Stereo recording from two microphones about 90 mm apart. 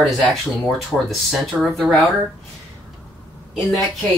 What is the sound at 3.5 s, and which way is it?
Speech, centre (ahead or behind).